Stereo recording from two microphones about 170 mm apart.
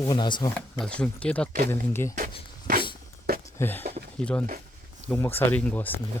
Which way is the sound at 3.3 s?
65° right (ahead or behind).